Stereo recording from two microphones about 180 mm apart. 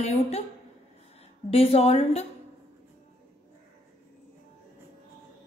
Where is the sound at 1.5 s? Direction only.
35° left (ahead or behind).